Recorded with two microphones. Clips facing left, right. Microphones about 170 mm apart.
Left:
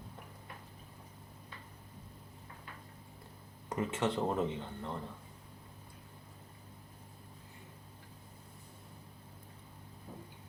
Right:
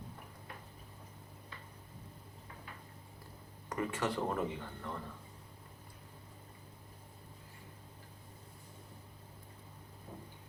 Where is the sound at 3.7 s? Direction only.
25° left (ahead or behind).